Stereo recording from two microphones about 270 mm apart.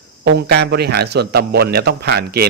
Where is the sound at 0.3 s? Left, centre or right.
Right.